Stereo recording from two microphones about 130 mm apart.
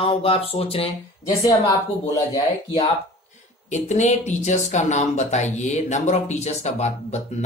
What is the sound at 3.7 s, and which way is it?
Speech, 65° left (ahead or behind).